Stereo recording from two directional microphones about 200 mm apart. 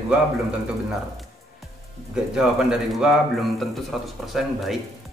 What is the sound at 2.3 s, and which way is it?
A man's voice, centre (ahead or behind).